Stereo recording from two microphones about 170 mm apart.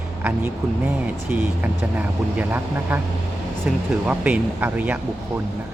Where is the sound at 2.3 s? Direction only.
10° right (ahead or behind).